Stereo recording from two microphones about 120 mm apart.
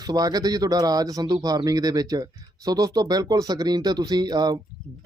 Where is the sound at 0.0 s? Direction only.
30° right (ahead or behind).